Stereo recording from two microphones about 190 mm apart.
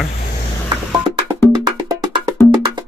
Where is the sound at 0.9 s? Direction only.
20° right (ahead or behind).